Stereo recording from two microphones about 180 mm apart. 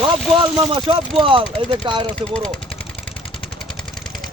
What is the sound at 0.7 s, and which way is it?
Speech, 30° right (ahead or behind).